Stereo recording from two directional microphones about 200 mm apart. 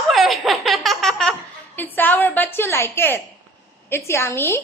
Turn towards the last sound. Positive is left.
turn(degrees=10)  # may be behind; listen again after turning